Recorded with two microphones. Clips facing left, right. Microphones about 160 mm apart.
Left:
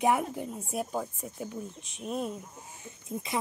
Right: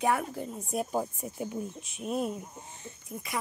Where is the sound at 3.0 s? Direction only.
25° left (ahead or behind).